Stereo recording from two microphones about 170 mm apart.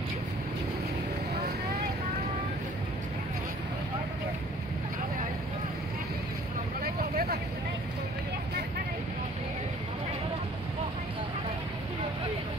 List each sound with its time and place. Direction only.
6.8 s vehicle: 65° right (ahead or behind)